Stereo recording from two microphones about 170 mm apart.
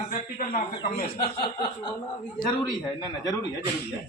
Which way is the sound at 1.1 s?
25° left (ahead or behind).